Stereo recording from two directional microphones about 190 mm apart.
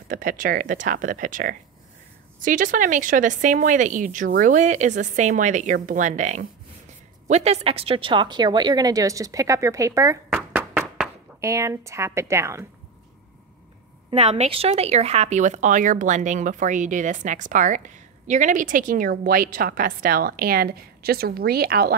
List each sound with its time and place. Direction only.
0.1 s speech: 45° right (ahead or behind); by 12.6 s 15° right (ahead or behind)
14.1 s speech: 35° right (ahead or behind); by 21.9 s 55° right (ahead or behind)